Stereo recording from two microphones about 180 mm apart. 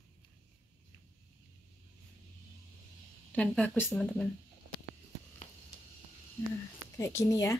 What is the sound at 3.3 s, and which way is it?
Speech, 10° left (ahead or behind).